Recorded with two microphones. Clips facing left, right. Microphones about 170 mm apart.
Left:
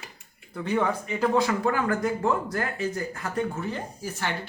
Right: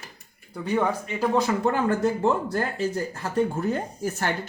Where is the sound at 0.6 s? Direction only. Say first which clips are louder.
Right 1 dB; 10° right (ahead or behind).